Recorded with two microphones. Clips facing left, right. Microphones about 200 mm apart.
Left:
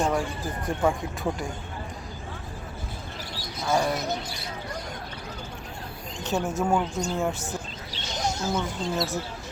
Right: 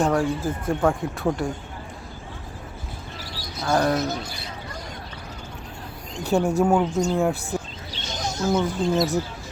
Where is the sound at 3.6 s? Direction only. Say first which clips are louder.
Right 4 dB; 10° left (ahead or behind).